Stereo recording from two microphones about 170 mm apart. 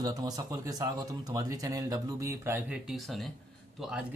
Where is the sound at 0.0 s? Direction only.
20° right (ahead or behind).